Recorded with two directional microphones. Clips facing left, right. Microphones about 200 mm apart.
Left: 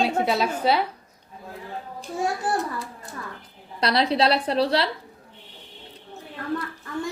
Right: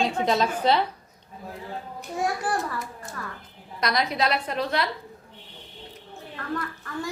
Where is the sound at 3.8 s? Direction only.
30° left (ahead or behind).